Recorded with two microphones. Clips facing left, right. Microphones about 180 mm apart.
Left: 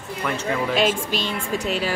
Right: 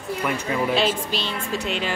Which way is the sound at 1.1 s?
45° left (ahead or behind).